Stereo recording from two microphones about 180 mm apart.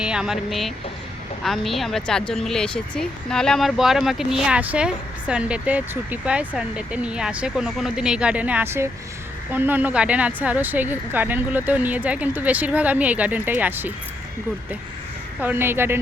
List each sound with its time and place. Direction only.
0.0 s speech: 5° right (ahead or behind)
15.4 s speech: 10° right (ahead or behind)